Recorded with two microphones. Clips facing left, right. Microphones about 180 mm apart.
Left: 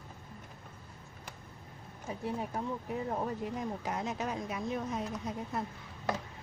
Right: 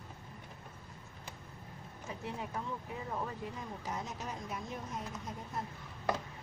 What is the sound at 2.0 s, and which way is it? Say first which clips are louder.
Speech: left 5 dB; 35° left (ahead or behind).